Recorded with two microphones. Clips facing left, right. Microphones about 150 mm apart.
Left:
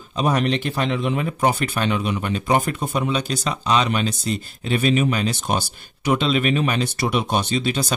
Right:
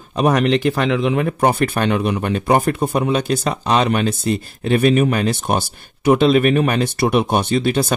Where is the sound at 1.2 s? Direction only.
55° right (ahead or behind).